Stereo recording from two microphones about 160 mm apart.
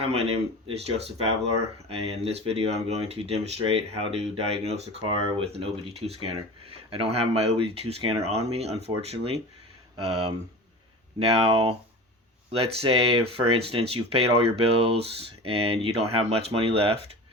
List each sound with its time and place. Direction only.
0.0 s speech: 40° right (ahead or behind)
11.4 s speech: 40° right (ahead or behind)